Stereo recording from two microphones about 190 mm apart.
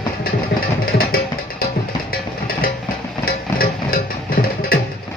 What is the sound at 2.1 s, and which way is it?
Music, 50° left (ahead or behind).